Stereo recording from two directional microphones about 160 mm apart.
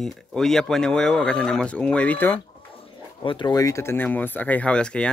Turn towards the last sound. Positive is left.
turn(degrees=5)  # may be behind; listen again after turning